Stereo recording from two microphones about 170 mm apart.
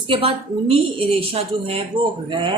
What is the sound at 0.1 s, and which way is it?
A woman's voice, 35° right (ahead or behind).